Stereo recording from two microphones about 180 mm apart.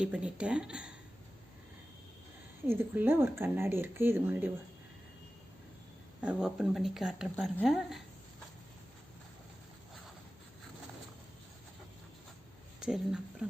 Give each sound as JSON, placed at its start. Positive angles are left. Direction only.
{"t": 0.0, "sound": "speech", "side_deg": -5}
{"t": 2.6, "sound": "speech", "side_deg": -10}
{"t": 6.2, "sound": "speech", "side_deg": -5}
{"t": 12.8, "sound": "speech", "side_deg": -5}